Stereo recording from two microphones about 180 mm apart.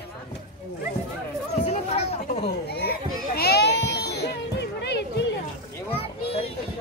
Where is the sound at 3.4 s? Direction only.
60° left (ahead or behind).